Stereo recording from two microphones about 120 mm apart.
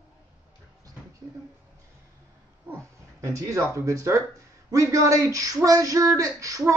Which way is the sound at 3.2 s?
25° right (ahead or behind).